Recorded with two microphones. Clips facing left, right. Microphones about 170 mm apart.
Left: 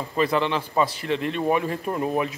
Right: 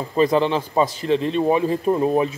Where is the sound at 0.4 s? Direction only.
35° right (ahead or behind).